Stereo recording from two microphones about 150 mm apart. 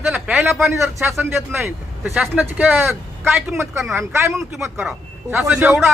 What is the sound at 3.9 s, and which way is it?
A man's voice, 15° right (ahead or behind).